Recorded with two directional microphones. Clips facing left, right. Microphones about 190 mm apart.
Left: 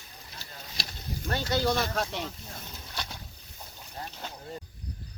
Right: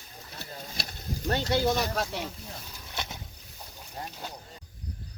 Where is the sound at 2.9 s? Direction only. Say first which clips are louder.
Right 2 dB; 25° right (ahead or behind).